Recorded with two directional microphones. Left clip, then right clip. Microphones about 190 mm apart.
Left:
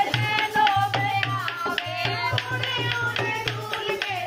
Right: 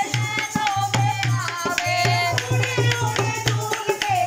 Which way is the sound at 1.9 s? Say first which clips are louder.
Right 6 dB; 25° right (ahead or behind).